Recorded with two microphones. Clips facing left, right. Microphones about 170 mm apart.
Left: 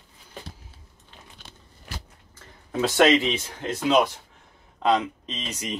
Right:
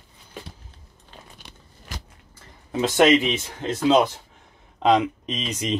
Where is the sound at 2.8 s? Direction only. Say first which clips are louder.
Right 2 dB; 20° right (ahead or behind).